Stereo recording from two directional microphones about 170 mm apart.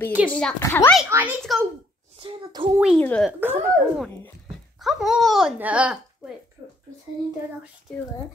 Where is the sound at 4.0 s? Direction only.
Centre (ahead or behind).